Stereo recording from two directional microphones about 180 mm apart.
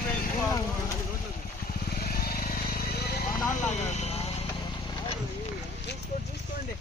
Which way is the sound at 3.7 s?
40° left (ahead or behind).